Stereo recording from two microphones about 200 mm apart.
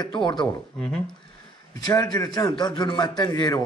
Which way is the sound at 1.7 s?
20° left (ahead or behind).